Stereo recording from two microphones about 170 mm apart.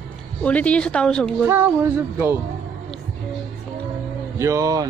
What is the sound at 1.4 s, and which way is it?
Music, 10° right (ahead or behind).